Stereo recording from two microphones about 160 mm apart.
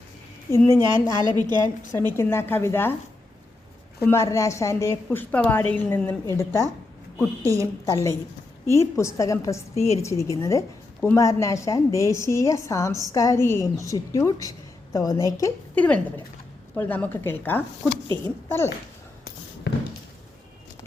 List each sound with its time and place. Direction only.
0.5 s a woman's voice: 15° left (ahead or behind)
1.4 s a woman's voice: 25° right (ahead or behind)
1.6 s a woman's voice: 15° left (ahead or behind)
4.0 s a woman's voice: 15° left (ahead or behind)
7.4 s a woman's voice: 20° right (ahead or behind)
8.7 s a woman's voice: 15° left (ahead or behind)
9.7 s a woman's voice: 40° left (ahead or behind)
10.0 s a woman's voice: 20° left (ahead or behind)
15.7 s a woman's voice: 10° left (ahead or behind)
18.1 s a woman's voice: 30° right (ahead or behind)
18.4 s speech: 15° left (ahead or behind)